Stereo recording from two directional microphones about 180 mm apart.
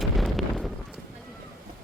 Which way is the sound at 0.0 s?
Centre (ahead or behind).